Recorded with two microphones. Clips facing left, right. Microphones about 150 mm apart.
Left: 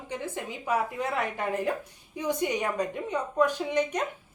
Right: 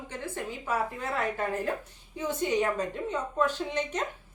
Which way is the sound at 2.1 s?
15° left (ahead or behind).